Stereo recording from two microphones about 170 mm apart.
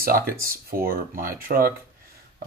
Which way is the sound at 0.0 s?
60° right (ahead or behind).